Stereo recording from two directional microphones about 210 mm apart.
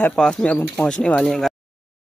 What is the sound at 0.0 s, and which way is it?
Speech, 5° left (ahead or behind).